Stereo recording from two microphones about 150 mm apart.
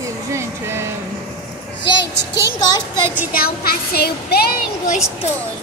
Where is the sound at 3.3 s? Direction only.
90° left.